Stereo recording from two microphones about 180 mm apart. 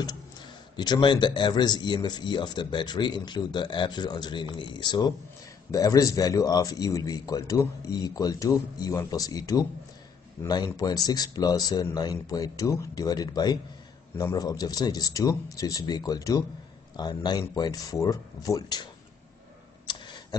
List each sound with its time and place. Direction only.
0.7 s speech: 25° left (ahead or behind)
19.9 s tick-tock: 25° left (ahead or behind)